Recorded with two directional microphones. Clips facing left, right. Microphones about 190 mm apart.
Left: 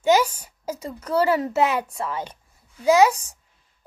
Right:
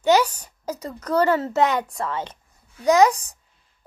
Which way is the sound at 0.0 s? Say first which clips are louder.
Right 1 dB; 10° left (ahead or behind).